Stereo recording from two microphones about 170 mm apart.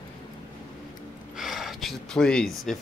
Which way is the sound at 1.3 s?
Centre (ahead or behind).